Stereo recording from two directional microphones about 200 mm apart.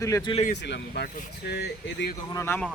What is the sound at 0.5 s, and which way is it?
Speech, 60° left (ahead or behind).